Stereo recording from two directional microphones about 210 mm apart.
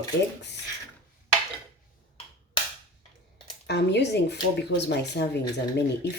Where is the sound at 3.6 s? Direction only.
55° left (ahead or behind).